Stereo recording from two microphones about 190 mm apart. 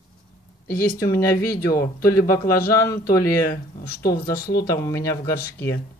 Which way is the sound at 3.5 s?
55° left (ahead or behind).